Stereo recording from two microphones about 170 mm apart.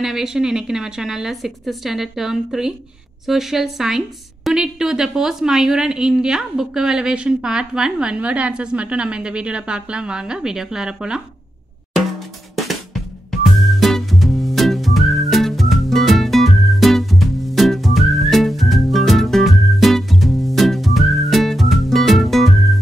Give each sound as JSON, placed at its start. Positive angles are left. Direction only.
{"t": 0.0, "sound": "a woman's voice", "side_deg": 0}
{"t": 12.5, "sound": "drum", "side_deg": 0}
{"t": 13.7, "sound": "music", "side_deg": 0}